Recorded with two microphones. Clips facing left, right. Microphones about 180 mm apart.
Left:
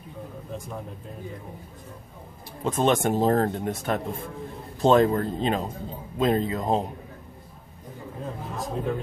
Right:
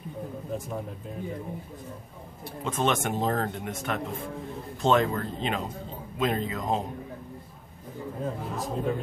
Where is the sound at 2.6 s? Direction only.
35° left (ahead or behind).